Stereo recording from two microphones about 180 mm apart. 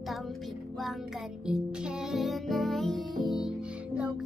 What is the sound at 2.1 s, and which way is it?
Music, centre (ahead or behind).